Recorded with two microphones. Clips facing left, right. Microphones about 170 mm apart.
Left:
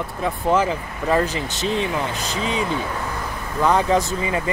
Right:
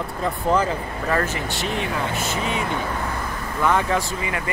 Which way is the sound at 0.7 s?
15° left (ahead or behind).